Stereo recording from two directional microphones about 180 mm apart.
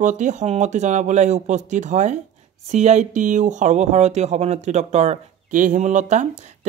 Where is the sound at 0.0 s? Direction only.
45° right (ahead or behind).